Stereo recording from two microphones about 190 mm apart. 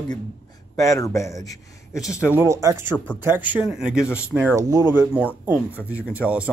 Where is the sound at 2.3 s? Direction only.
15° right (ahead or behind).